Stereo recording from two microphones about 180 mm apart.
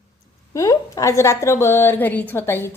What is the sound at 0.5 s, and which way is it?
A woman's voice, 15° left (ahead or behind).